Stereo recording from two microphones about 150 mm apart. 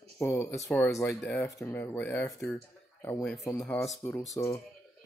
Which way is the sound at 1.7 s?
15° left (ahead or behind).